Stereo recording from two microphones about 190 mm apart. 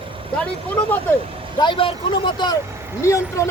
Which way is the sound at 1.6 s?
25° left (ahead or behind).